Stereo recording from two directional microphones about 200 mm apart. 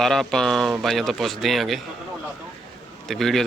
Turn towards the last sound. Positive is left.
turn(degrees=0)  # may be behind; listen again after turning